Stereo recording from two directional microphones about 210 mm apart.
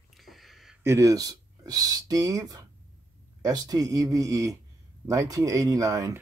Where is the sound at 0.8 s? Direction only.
15° right (ahead or behind).